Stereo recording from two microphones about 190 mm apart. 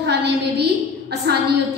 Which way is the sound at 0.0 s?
60° right (ahead or behind).